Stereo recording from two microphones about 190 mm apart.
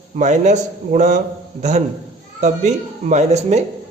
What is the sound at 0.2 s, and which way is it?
Speech, 40° right (ahead or behind).